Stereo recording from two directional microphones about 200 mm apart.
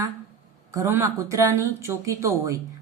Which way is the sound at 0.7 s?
15° right (ahead or behind).